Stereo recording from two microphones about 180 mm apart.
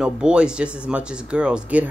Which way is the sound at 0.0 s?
5° right (ahead or behind).